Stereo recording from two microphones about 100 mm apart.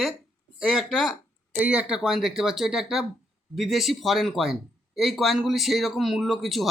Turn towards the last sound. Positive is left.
turn(degrees=0)  # may be behind; listen again after turning